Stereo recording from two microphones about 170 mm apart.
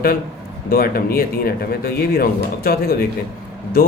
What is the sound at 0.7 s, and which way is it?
Speech, 60° left (ahead or behind).